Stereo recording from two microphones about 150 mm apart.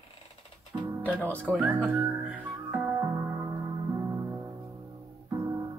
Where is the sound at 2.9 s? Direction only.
20° right (ahead or behind).